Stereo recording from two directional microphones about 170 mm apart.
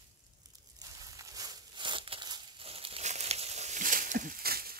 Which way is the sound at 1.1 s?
20° right (ahead or behind).